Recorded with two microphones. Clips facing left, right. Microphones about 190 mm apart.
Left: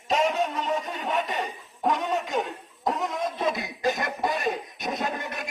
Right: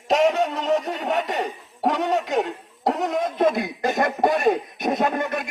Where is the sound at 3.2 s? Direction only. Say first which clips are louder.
Right 7 dB; 50° right (ahead or behind).